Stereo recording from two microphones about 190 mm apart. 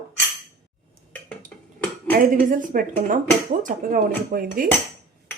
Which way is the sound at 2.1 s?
45° right (ahead or behind).